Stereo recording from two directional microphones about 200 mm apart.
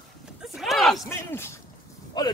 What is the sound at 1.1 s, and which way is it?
Speech, 10° left (ahead or behind).